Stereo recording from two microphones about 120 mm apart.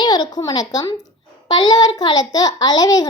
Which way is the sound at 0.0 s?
35° left (ahead or behind).